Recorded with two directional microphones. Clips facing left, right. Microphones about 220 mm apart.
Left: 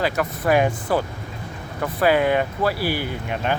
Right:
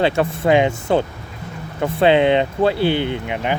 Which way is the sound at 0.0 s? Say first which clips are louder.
Right 5 dB; 25° right (ahead or behind).